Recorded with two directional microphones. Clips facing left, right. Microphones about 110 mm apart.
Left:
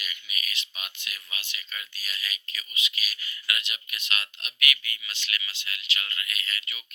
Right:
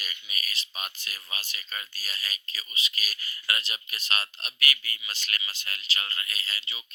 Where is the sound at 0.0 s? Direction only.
40° right (ahead or behind).